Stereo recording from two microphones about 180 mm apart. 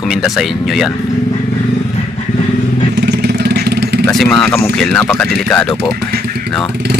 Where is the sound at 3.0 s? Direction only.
65° right (ahead or behind).